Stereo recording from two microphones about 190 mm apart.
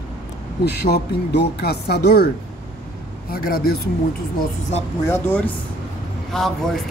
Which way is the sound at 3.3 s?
55° left (ahead or behind).